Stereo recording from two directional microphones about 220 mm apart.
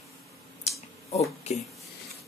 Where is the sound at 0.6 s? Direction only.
30° left (ahead or behind).